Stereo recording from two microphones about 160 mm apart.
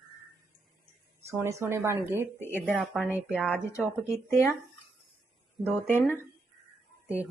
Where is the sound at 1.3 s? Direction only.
20° right (ahead or behind).